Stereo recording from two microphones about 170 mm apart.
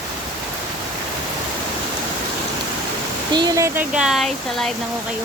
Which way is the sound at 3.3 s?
20° right (ahead or behind).